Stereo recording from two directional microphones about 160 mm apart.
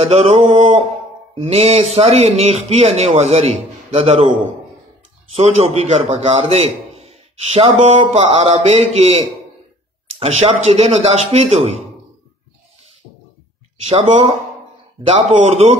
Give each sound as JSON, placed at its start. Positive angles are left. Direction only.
{"t": 0.0, "sound": "a man's voice", "side_deg": -40}
{"t": 13.8, "sound": "speech", "side_deg": -40}